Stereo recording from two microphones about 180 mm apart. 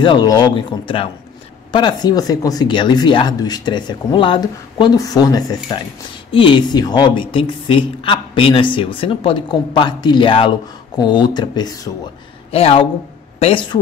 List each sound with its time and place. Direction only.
0.0 s a woman's voice: 25° left (ahead or behind)
12.4 s a woman's voice: 35° left (ahead or behind)